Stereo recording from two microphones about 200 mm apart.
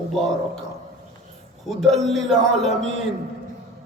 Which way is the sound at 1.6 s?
Centre (ahead or behind).